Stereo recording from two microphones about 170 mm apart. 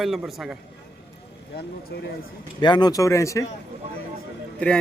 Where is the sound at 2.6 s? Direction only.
25° left (ahead or behind).